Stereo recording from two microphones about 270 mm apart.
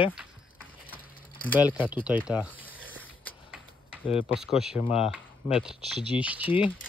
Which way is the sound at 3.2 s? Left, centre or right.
Centre.